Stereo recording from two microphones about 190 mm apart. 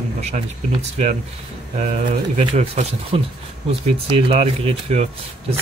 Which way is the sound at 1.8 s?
40° right (ahead or behind).